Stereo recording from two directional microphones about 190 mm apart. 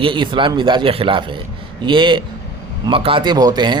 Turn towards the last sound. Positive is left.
turn(degrees=-20)  # may be behind; listen again after turning